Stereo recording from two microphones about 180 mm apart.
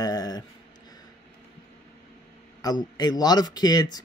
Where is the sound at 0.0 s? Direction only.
20° left (ahead or behind).